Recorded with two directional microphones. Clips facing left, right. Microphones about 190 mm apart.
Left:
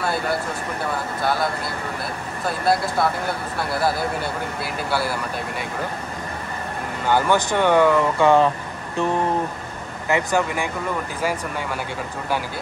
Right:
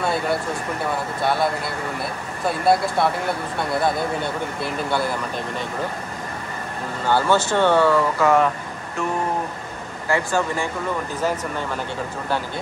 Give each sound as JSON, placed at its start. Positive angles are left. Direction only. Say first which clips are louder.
{"t": 0.0, "sound": "speech", "louder": "right 1 dB", "side_deg": 0}
{"t": 7.1, "sound": "speech", "louder": "even", "side_deg": 15}
{"t": 8.2, "sound": "speech", "louder": "left 3 dB", "side_deg": 30}
{"t": 10.0, "sound": "speech", "louder": "left 1 dB", "side_deg": 15}